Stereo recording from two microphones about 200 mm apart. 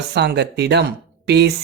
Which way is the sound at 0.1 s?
55° right (ahead or behind).